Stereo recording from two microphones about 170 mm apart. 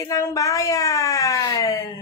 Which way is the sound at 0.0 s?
20° left (ahead or behind).